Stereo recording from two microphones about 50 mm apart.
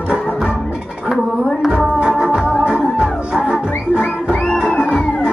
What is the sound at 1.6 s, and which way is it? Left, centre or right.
Music, centre.